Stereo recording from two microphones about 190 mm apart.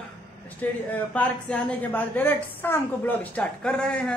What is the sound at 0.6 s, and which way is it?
A woman's voice, 10° left (ahead or behind).